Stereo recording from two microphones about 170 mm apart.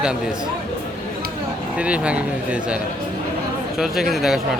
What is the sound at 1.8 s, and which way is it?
Speech, 5° right (ahead or behind).